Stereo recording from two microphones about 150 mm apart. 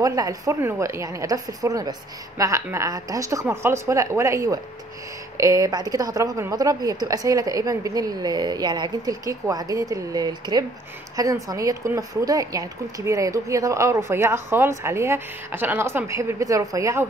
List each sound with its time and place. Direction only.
0.0 s a woman's voice: 25° right (ahead or behind)